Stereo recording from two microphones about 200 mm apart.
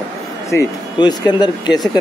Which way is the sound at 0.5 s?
20° left (ahead or behind).